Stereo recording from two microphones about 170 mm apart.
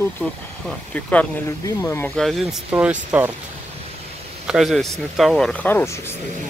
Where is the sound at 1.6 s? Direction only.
20° left (ahead or behind).